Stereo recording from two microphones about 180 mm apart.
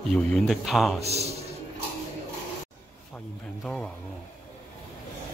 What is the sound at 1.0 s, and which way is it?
Speech, 35° right (ahead or behind).